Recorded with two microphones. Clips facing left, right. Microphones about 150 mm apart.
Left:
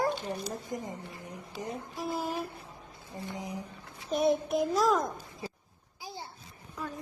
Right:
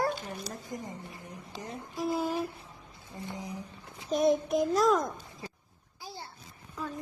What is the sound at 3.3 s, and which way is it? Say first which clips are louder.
Child singing: left 1 dB; 20° left (ahead or behind).